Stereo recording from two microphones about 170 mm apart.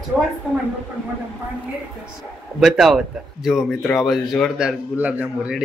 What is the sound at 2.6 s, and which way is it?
Speech, centre (ahead or behind).